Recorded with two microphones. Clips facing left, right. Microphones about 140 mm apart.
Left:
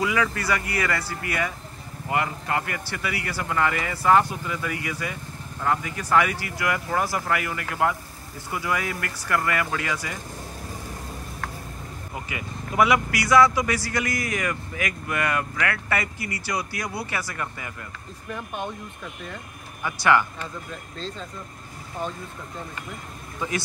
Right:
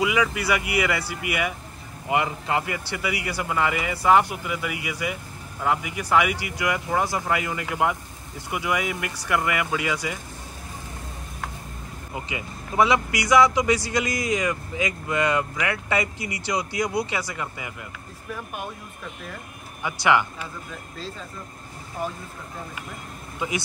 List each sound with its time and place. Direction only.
0.0 s speech: 15° right (ahead or behind)
12.3 s a man's voice: 25° right (ahead or behind)
18.3 s speech: 5° right (ahead or behind)
19.8 s speech: 15° right (ahead or behind)
22.0 s speech: 10° right (ahead or behind)